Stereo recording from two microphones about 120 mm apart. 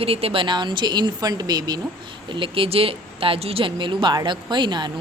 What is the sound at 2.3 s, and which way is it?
Speech, 45° right (ahead or behind).